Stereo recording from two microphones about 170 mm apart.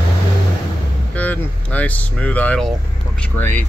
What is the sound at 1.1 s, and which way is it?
Speech, 10° left (ahead or behind).